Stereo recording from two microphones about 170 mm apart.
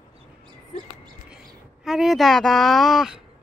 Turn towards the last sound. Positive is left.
turn(degrees=0)  # may be behind; listen again after turning